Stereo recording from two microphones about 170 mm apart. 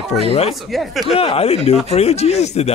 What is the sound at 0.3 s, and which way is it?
Speech, 35° left (ahead or behind).